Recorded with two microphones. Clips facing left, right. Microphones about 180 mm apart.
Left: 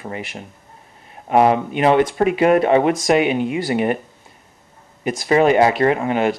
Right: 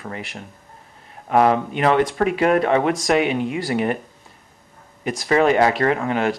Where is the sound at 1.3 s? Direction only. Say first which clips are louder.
Left 2 dB; 15° left (ahead or behind).